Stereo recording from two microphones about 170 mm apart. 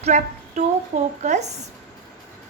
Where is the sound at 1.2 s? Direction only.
45° right (ahead or behind).